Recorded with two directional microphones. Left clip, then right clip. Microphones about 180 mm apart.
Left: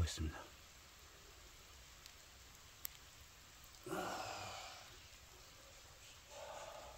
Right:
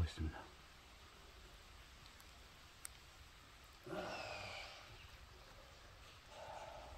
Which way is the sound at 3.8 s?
20° left (ahead or behind).